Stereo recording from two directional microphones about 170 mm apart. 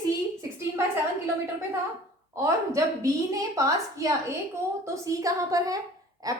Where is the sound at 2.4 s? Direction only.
20° right (ahead or behind).